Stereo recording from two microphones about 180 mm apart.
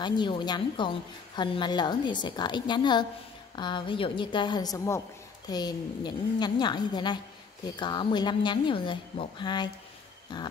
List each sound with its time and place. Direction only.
0.0 s a woman's voice: 25° left (ahead or behind)